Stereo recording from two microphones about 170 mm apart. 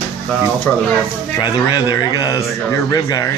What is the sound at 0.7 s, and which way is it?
Speech, 10° left (ahead or behind).